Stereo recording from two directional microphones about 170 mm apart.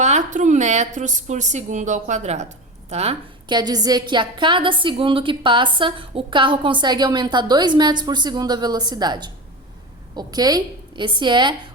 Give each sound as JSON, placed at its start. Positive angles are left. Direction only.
{"t": 0.0, "sound": "a woman's voice", "side_deg": -45}
{"t": 3.5, "sound": "a woman's voice", "side_deg": -25}